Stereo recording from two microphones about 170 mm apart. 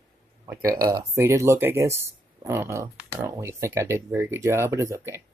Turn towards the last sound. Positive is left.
turn(degrees=-15)  # may be behind; listen again after turning